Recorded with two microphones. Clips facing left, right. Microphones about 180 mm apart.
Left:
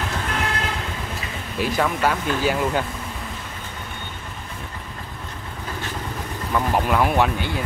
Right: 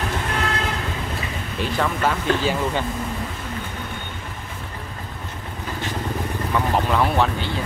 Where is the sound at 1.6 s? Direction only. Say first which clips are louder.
Left 1 dB; 5° left (ahead or behind).